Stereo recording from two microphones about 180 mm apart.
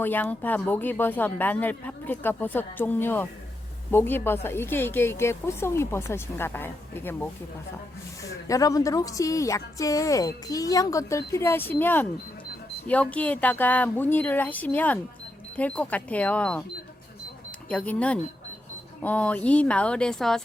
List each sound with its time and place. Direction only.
0.0 s a woman's voice: 10° left (ahead or behind)
17.7 s a woman's voice: 5° left (ahead or behind)